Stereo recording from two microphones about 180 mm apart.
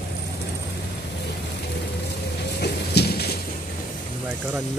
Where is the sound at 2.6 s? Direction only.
65° left (ahead or behind).